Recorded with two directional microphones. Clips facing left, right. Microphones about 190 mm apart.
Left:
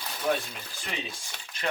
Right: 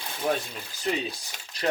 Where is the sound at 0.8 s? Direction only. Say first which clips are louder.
Right 9 dB; 40° right (ahead or behind).